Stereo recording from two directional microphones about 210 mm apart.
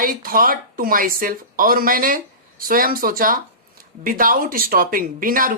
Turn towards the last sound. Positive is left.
turn(degrees=-40)  # may be behind; listen again after turning